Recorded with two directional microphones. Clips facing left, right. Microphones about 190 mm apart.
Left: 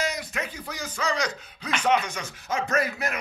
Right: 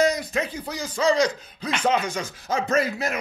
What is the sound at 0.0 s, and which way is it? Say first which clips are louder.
Speech: right 8 dB; 35° right (ahead or behind).